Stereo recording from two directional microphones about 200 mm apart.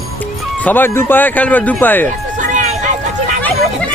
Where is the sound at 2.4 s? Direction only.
40° right (ahead or behind).